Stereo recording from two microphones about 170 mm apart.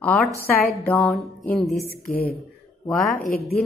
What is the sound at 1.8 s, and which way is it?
Speech, 60° left (ahead or behind).